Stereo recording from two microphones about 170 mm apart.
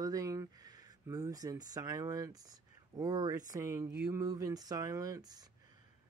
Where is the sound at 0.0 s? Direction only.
20° right (ahead or behind).